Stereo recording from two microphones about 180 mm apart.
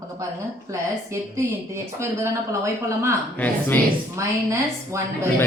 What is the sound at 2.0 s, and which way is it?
Speech, 15° right (ahead or behind).